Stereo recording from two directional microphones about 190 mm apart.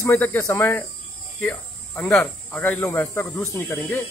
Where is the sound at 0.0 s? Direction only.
10° left (ahead or behind).